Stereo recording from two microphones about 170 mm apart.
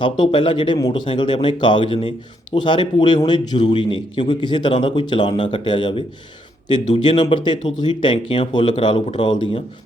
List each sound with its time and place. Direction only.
0.0 s a man's voice: 30° left (ahead or behind)